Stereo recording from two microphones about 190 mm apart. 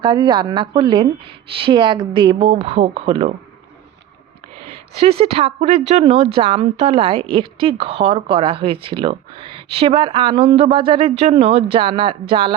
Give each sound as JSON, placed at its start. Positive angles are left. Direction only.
{"t": 0.0, "sound": "speech", "side_deg": -25}
{"t": 4.7, "sound": "speech", "side_deg": -30}